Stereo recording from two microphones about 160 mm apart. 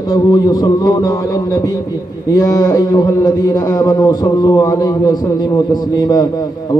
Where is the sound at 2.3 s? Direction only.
20° left (ahead or behind).